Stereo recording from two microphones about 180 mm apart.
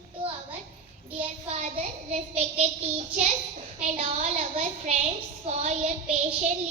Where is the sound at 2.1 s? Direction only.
40° right (ahead or behind).